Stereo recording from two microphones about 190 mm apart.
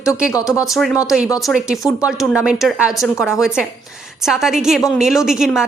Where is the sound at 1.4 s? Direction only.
Centre (ahead or behind).